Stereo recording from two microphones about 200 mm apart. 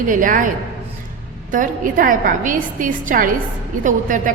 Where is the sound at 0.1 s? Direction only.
40° right (ahead or behind).